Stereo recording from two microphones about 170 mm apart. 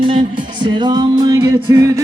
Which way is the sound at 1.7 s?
15° right (ahead or behind).